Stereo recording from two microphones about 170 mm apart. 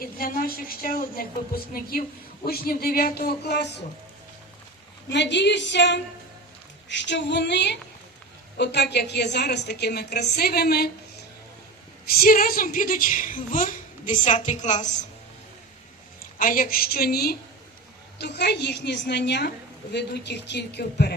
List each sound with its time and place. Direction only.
0.0 s a woman's voice: 55° left (ahead or behind); by 3.8 s 80° left
5.1 s a woman's voice: 90° left; by 10.9 s 70° left (ahead or behind)
12.2 s a woman's voice: 60° left (ahead or behind)
16.4 s a woman's voice: 55° left (ahead or behind)
18.2 s a woman's voice: 75° left (ahead or behind)